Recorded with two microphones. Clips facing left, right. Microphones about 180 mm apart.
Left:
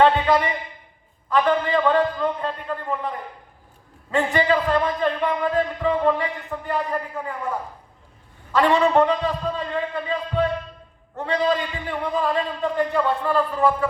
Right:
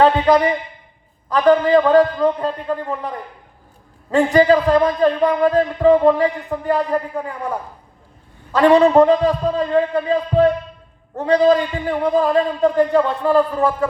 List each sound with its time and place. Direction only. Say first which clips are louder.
0.0 s a man's voice: right 4 dB; 40° right (ahead or behind)
4.1 s a man's voice: right 7 dB; 40° right (ahead or behind)
8.5 s a man's voice: right 6 dB; 40° right (ahead or behind)